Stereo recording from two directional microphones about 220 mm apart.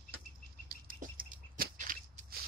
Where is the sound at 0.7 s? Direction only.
40° right (ahead or behind).